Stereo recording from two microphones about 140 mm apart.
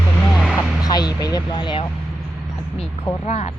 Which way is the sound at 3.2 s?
55° left (ahead or behind).